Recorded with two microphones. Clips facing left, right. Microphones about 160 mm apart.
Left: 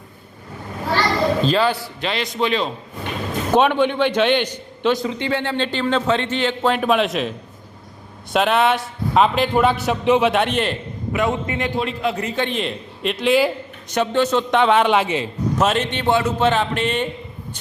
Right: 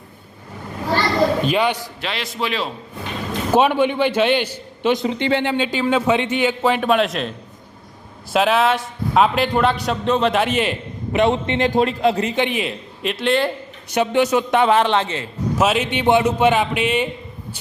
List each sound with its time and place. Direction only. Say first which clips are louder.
1.4 s a man's voice: left 1 dB; 15° right (ahead or behind)
2.0 s a man's voice: left 3 dB; centre (ahead or behind)
4.9 s a man's voice: right 3 dB; 25° right (ahead or behind)
5.4 s a man's voice: right 2 dB; 10° right (ahead or behind)
11.1 s a man's voice: right 4 dB; 25° right (ahead or behind)
11.7 s a man's voice: right 7 dB; 40° right (ahead or behind)
12.2 s a man's voice: right 2 dB; 15° right (ahead or behind); by 13.5 s 5° left (ahead or behind)
13.9 s a man's voice: right 1 dB; 10° right (ahead or behind); by 15.3 s 15° left (ahead or behind)
15.5 s a man's voice: right 2 dB; 5° right (ahead or behind)